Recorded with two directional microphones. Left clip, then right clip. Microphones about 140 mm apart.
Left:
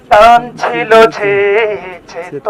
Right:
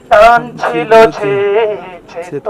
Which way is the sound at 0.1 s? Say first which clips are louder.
Left 1 dB; 35° left (ahead or behind).